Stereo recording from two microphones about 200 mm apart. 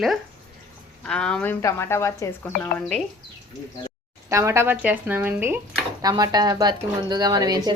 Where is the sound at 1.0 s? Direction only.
5° left (ahead or behind).